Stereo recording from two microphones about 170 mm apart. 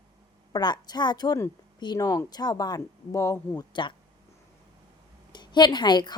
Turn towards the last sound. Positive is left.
turn(degrees=25)  # may be behind; listen again after turning